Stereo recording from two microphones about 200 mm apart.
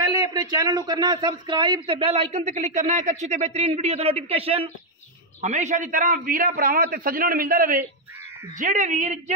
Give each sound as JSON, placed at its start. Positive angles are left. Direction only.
{"t": 0.1, "sound": "a man's voice", "side_deg": -20}